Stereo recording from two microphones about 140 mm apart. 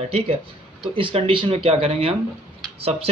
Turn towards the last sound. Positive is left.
turn(degrees=-45)  # may be behind; listen again after turning